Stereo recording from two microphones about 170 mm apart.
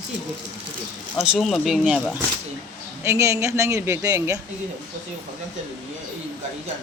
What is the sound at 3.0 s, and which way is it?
A woman's voice, 15° right (ahead or behind).